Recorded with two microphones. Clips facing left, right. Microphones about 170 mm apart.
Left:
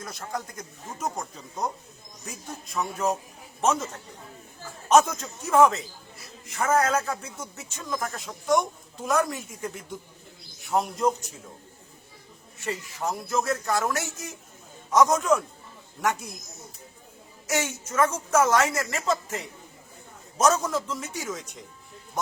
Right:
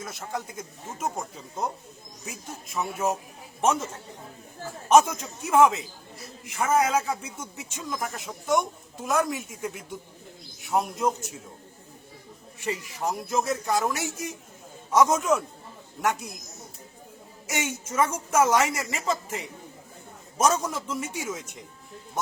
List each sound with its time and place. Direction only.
0.2 s a man's voice: 5° right (ahead or behind)
4.9 s a man's voice: 10° right (ahead or behind)
12.5 s a man's voice: 15° right (ahead or behind)
17.9 s a man's voice: 10° right (ahead or behind)